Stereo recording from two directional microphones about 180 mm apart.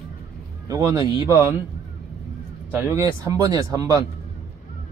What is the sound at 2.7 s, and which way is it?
Speech, 15° right (ahead or behind).